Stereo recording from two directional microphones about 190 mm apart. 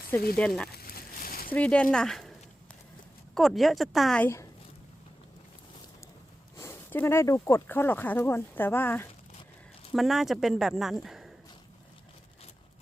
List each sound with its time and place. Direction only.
0.3 s speech: 5° left (ahead or behind)
0.7 s a sound: 55° left (ahead or behind)
1.5 s speech: 5° left (ahead or behind)
3.3 s speech: centre (ahead or behind)
6.6 s speech: 10° left (ahead or behind)
9.9 s speech: centre (ahead or behind)